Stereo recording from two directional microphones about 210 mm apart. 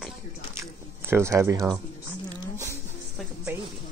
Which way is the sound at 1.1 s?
10° right (ahead or behind).